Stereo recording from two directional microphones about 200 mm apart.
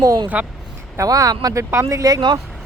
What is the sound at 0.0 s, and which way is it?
Speech, 15° right (ahead or behind).